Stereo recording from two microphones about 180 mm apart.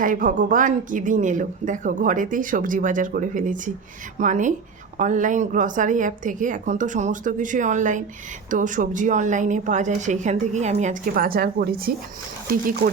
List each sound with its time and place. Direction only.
0.0 s a woman's voice: 50° right (ahead or behind)